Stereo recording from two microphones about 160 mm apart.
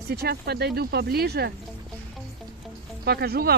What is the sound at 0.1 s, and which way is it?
Speech, 90° right.